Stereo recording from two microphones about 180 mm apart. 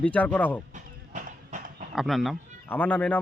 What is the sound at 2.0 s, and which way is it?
Speech, centre (ahead or behind).